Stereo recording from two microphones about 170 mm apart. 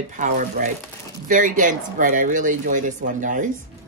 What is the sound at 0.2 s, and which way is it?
Speech, 50° right (ahead or behind).